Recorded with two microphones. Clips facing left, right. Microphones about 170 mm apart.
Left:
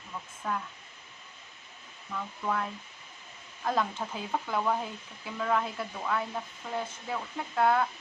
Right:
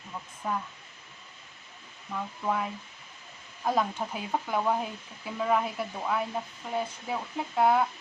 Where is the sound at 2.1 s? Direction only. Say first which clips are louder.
Right 2 dB; 15° right (ahead or behind).